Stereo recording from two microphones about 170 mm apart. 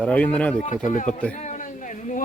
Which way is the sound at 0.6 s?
45° left (ahead or behind).